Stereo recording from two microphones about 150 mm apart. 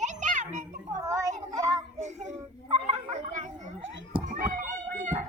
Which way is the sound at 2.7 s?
40° right (ahead or behind).